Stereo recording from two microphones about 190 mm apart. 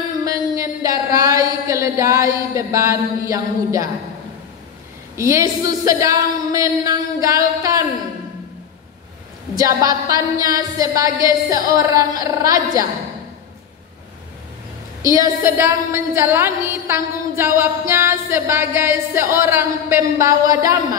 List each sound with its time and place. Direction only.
0.2 s a sound: 20° right (ahead or behind)
5.1 s a woman's voice: 15° right (ahead or behind)
9.6 s a woman's voice: 20° right (ahead or behind)
15.1 s a woman's voice: 15° right (ahead or behind)